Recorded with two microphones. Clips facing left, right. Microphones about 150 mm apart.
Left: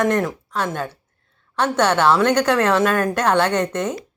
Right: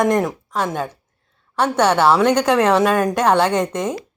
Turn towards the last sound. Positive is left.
turn(degrees=-10)  # may be behind; listen again after turning